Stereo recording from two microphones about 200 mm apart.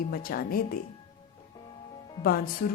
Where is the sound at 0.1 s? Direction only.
45° left (ahead or behind).